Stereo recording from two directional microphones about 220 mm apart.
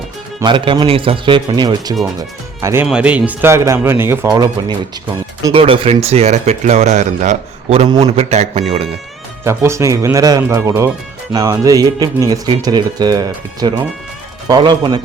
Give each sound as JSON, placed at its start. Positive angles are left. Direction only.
{"t": 0.3, "sound": "speech", "side_deg": -20}
{"t": 5.5, "sound": "speech", "side_deg": -25}
{"t": 9.4, "sound": "speech", "side_deg": -10}